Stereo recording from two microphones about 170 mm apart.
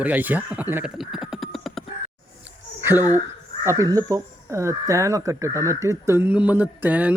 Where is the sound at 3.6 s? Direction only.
20° right (ahead or behind).